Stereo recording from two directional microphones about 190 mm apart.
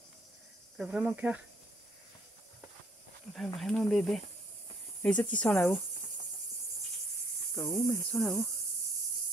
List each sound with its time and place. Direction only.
0.7 s cricket: 5° right (ahead or behind)
3.5 s cricket: centre (ahead or behind)
5.0 s speech: 5° left (ahead or behind)
7.5 s cricket: 10° left (ahead or behind)